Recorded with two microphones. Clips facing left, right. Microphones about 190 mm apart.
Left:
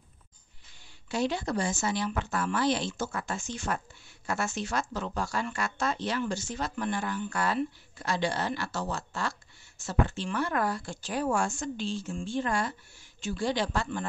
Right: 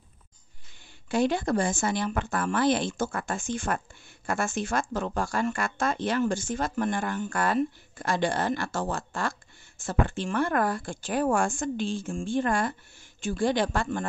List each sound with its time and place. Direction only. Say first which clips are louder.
1.0 s speech: right 5 dB; 50° right (ahead or behind)